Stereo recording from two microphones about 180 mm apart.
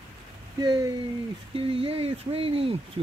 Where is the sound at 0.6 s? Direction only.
20° right (ahead or behind).